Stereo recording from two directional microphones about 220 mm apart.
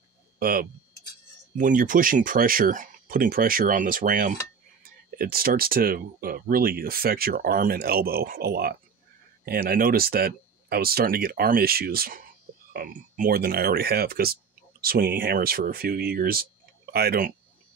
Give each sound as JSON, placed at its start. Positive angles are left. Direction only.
{"t": 0.4, "sound": "speech", "side_deg": -40}